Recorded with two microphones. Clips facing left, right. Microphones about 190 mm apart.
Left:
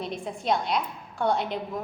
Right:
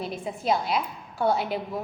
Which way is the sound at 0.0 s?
5° right (ahead or behind).